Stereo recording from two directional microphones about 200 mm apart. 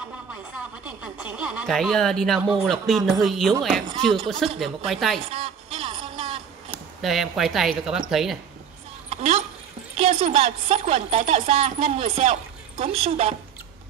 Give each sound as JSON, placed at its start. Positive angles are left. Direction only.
{"t": 1.0, "sound": "speech", "side_deg": -5}
{"t": 5.3, "sound": "a sound", "side_deg": -30}
{"t": 7.0, "sound": "speech", "side_deg": 0}
{"t": 9.1, "sound": "speech", "side_deg": -30}